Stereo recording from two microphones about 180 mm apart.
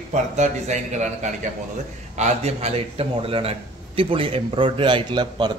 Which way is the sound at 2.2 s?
40° right (ahead or behind).